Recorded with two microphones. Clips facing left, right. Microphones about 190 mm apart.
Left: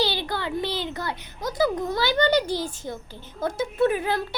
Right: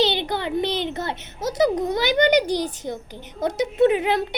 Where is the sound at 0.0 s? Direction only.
20° right (ahead or behind).